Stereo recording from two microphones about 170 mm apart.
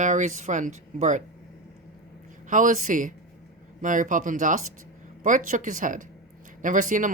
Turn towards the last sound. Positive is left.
turn(degrees=-50)  # may be behind; listen again after turning